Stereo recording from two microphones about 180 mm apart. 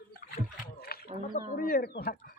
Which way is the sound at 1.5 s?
55° left (ahead or behind).